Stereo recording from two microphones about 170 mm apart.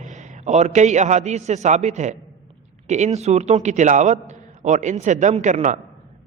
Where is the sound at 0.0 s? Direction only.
45° right (ahead or behind).